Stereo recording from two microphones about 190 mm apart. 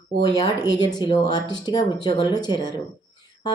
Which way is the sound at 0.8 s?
25° left (ahead or behind).